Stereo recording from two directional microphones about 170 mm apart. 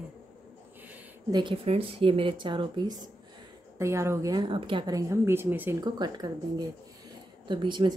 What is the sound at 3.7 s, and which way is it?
Speech, 15° right (ahead or behind).